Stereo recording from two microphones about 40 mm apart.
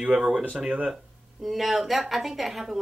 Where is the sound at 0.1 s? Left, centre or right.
Centre.